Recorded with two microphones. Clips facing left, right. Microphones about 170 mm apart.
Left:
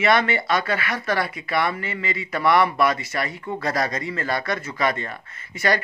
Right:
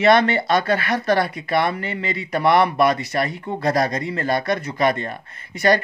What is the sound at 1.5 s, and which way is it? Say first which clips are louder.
Speech: right 2 dB; 20° right (ahead or behind).